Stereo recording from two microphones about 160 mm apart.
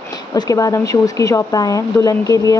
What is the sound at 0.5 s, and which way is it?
Speech, 20° left (ahead or behind).